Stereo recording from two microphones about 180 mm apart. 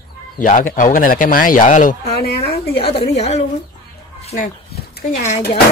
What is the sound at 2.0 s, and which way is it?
Speech, 60° left (ahead or behind).